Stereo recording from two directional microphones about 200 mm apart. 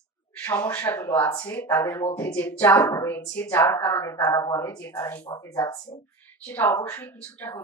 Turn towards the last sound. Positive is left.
turn(degrees=10)  # may be behind; listen again after turning